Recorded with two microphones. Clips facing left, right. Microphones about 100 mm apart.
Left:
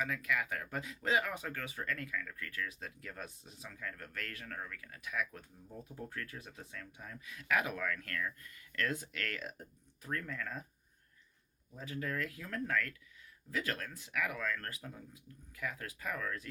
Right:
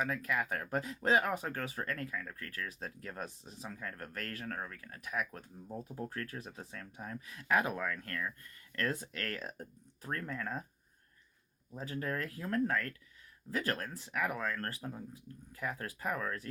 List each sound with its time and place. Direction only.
0.0 s speech: 35° right (ahead or behind)
11.7 s speech: 35° right (ahead or behind)